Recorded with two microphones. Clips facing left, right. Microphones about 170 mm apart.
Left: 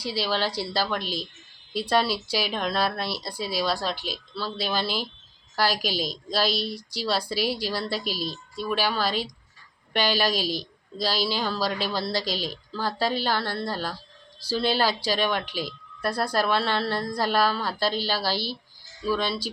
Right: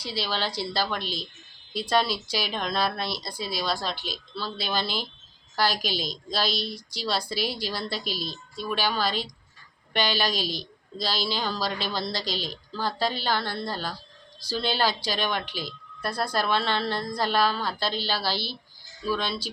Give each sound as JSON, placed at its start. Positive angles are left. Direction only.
{"t": 0.0, "sound": "a woman's voice", "side_deg": 5}
{"t": 6.5, "sound": "a woman's voice", "side_deg": 35}
{"t": 6.7, "sound": "speech", "side_deg": 5}
{"t": 8.1, "sound": "a woman's voice", "side_deg": 35}
{"t": 8.7, "sound": "a woman's voice", "side_deg": 5}
{"t": 10.4, "sound": "a man's voice", "side_deg": 35}
{"t": 11.0, "sound": "a woman's voice", "side_deg": 5}